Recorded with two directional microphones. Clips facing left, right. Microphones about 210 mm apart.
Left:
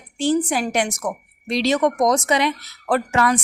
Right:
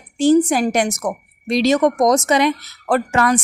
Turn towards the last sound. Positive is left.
turn(degrees=-50)  # may be behind; listen again after turning